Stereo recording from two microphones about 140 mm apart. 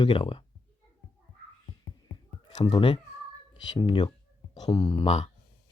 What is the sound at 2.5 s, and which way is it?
Speech, 40° left (ahead or behind).